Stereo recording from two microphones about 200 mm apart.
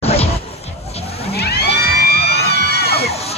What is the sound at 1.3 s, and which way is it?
Crowd, 55° left (ahead or behind).